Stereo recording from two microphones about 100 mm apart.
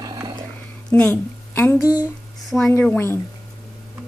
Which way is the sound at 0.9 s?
15° left (ahead or behind).